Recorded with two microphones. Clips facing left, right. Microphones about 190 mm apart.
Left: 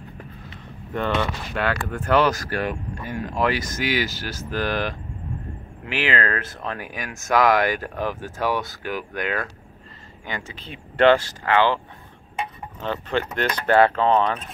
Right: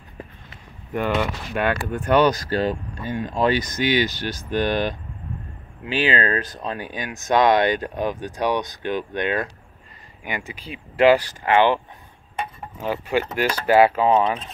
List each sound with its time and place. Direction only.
0.9 s speech: 10° right (ahead or behind)
11.2 s speech: 15° right (ahead or behind)
12.8 s speech: 10° right (ahead or behind)